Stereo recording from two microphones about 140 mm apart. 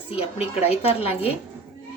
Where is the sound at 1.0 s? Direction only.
45° left (ahead or behind).